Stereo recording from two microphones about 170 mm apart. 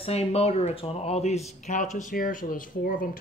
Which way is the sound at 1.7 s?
50° left (ahead or behind).